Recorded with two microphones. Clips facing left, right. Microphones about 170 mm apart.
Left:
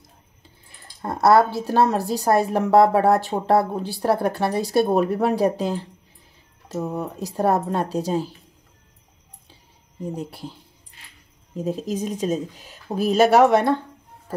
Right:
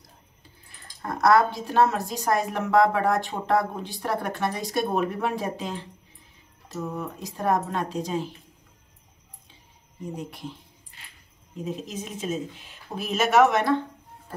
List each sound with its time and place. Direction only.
1.0 s a woman's voice: 30° left (ahead or behind)
10.1 s a woman's voice: 35° left (ahead or behind)
11.5 s a woman's voice: 40° left (ahead or behind)